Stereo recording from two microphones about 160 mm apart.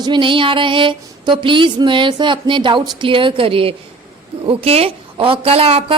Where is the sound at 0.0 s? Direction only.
30° right (ahead or behind).